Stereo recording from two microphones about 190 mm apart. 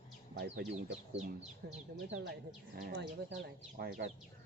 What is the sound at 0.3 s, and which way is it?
Speech, 60° right (ahead or behind).